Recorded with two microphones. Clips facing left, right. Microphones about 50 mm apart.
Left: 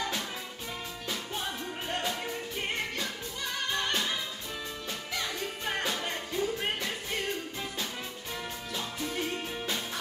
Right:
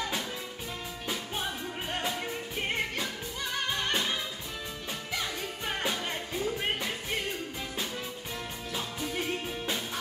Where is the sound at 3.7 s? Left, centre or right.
Centre.